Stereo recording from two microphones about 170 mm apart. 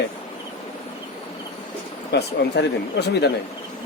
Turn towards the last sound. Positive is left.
turn(degrees=75)  # may be behind; listen again after turning